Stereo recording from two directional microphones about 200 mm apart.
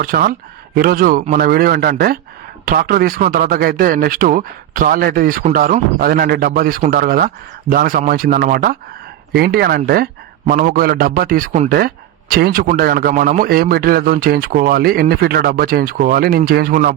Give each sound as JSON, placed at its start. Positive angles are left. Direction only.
{"t": 0.0, "sound": "a man's voice", "side_deg": -45}